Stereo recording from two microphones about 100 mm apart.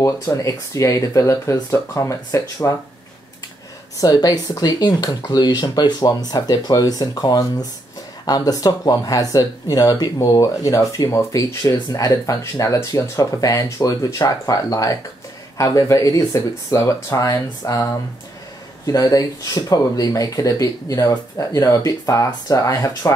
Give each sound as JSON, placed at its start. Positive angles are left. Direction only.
{"t": 0.0, "sound": "speech", "side_deg": 35}
{"t": 4.0, "sound": "speech", "side_deg": 40}